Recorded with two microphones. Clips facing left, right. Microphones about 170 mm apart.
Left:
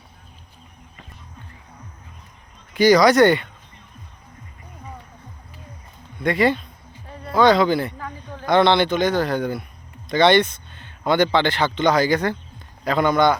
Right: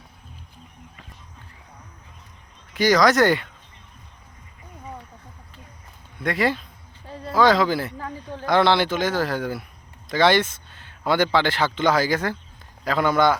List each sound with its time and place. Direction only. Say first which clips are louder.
2.7 s speech: left 4 dB; centre (ahead or behind)
6.1 s speech: left 4 dB; centre (ahead or behind)
7.1 s music: right 2 dB; 30° right (ahead or behind)
7.3 s speech: left 2 dB; centre (ahead or behind)